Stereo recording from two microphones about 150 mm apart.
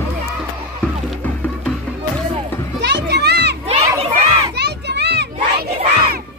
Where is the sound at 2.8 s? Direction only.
90° right.